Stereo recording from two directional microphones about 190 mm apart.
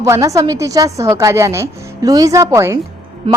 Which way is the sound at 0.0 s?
15° right (ahead or behind).